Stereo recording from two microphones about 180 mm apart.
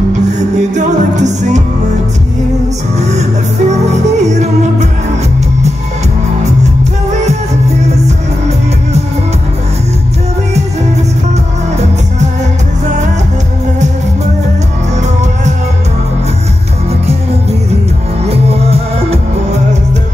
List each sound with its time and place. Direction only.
0.6 s music: 40° right (ahead or behind)
3.0 s music: 40° right (ahead or behind)
18.3 s music: 35° right (ahead or behind)